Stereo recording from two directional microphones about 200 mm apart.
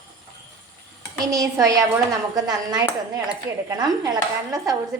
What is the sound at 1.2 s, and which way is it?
Speech, 15° right (ahead or behind).